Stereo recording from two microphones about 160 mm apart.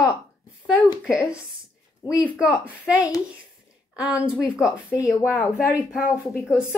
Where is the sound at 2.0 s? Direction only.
30° left (ahead or behind).